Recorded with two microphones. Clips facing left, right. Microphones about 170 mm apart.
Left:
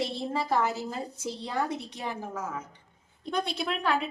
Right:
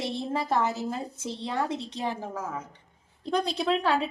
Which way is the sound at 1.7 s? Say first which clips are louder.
Right 3 dB; 30° right (ahead or behind).